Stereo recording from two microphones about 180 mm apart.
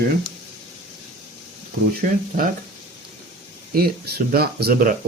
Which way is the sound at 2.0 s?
50° right (ahead or behind).